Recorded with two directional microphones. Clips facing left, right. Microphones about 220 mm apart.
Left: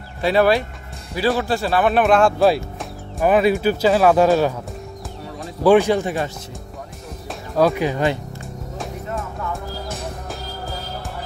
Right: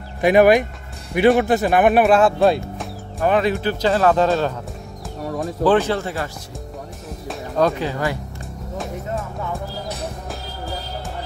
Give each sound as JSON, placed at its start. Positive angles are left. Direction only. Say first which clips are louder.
{"t": 0.2, "sound": "speech", "louder": "right 3 dB", "side_deg": -15}
{"t": 2.0, "sound": "speech", "louder": "even", "side_deg": -5}
{"t": 5.6, "sound": "speech", "louder": "left 4 dB", "side_deg": 15}
{"t": 7.2, "sound": "music", "louder": "left 1 dB", "side_deg": 5}
{"t": 7.9, "sound": "speech", "louder": "left 3 dB", "side_deg": 20}